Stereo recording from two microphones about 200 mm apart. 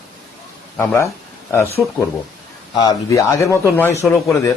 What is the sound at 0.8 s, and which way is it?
Speech, 15° left (ahead or behind).